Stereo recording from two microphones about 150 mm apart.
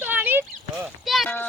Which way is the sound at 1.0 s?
Centre (ahead or behind).